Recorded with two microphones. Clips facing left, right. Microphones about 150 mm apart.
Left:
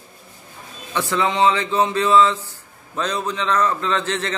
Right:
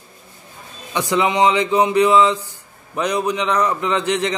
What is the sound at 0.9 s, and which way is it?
A man's voice, 15° right (ahead or behind).